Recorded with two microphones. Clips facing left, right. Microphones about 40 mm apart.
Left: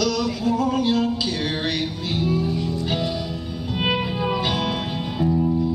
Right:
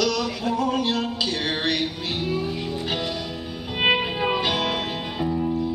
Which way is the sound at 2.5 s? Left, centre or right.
Right.